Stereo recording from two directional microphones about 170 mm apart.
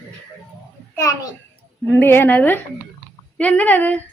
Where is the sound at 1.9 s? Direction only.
10° left (ahead or behind).